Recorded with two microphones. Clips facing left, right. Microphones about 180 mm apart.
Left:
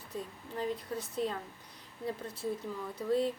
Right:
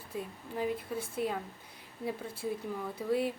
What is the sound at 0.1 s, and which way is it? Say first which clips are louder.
Speech: right 2 dB; 10° right (ahead or behind).